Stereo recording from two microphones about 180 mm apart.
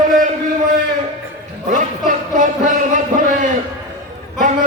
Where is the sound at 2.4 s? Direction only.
45° right (ahead or behind).